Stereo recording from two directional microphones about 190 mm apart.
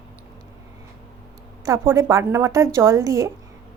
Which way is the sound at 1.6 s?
15° right (ahead or behind).